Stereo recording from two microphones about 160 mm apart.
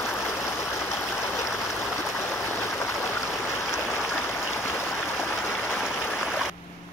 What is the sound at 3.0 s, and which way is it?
Stream, 15° left (ahead or behind).